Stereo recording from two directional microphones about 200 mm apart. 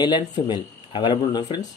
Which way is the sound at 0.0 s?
20° left (ahead or behind).